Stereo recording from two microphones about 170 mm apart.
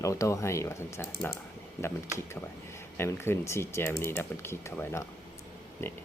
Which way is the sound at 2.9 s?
15° left (ahead or behind).